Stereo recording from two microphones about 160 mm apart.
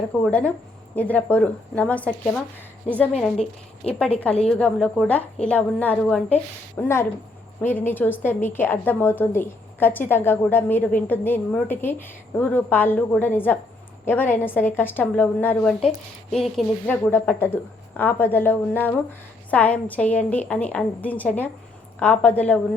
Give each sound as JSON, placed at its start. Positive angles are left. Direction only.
{"t": 0.1, "sound": "a woman's voice", "side_deg": 10}
{"t": 4.4, "sound": "a woman's voice", "side_deg": 5}
{"t": 16.8, "sound": "a woman's voice", "side_deg": 10}